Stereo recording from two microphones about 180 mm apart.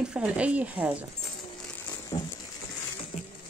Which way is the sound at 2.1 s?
25° left (ahead or behind).